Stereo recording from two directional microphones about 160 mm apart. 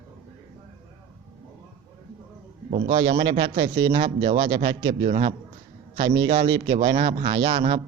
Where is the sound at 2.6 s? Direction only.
45° right (ahead or behind).